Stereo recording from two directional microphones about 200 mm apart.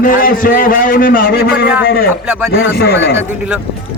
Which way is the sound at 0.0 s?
45° left (ahead or behind).